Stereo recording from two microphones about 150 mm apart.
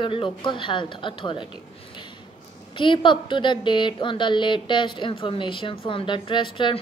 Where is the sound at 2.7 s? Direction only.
35° left (ahead or behind).